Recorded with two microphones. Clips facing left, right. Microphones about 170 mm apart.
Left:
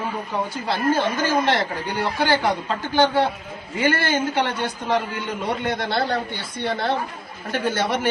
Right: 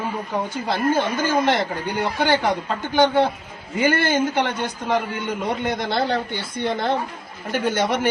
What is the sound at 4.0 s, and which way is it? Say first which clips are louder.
A man's voice: right 2 dB; 15° right (ahead or behind).